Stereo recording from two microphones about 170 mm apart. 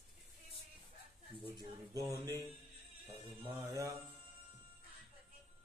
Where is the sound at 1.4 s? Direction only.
20° right (ahead or behind).